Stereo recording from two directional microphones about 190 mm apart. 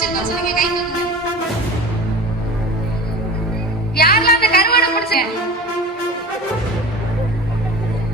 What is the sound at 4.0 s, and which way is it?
Music, 55° left (ahead or behind).